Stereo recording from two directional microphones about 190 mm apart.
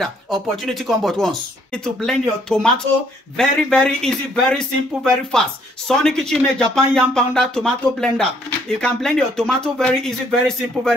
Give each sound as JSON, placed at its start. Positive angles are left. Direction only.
{"t": 0.0, "sound": "speech", "side_deg": 0}